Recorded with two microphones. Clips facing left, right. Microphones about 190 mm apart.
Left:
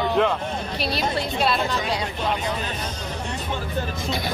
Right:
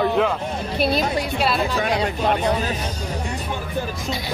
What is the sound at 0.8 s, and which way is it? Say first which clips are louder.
Speech: right 7 dB; 50° right (ahead or behind).